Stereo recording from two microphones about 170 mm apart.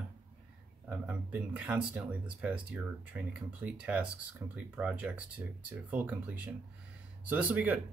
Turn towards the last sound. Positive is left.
turn(degrees=-10)  # may be behind; listen again after turning